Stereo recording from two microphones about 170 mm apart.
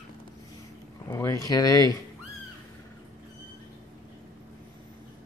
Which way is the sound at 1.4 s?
20° left (ahead or behind).